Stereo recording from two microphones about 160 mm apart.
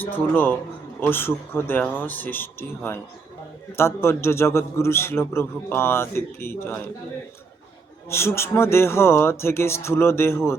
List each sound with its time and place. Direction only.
0.0 s a man's voice: 10° left (ahead or behind)
8.1 s a man's voice: 15° left (ahead or behind)